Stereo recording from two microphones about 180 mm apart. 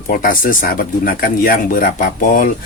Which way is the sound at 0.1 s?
50° left (ahead or behind).